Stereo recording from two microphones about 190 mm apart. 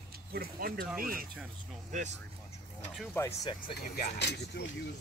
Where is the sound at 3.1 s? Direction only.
15° left (ahead or behind).